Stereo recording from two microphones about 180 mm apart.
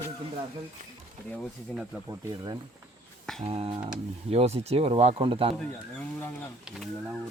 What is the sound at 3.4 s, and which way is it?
Speech, 30° right (ahead or behind).